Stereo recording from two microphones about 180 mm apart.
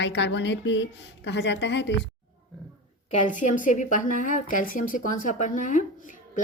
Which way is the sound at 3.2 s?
45° left (ahead or behind).